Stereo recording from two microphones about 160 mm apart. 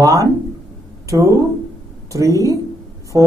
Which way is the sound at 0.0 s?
20° right (ahead or behind).